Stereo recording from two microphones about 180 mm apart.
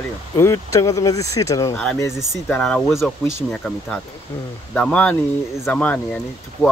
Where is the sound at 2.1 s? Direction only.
5° left (ahead or behind).